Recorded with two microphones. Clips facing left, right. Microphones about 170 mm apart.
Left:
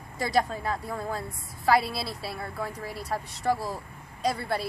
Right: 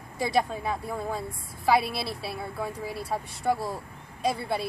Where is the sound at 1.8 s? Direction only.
65° right (ahead or behind).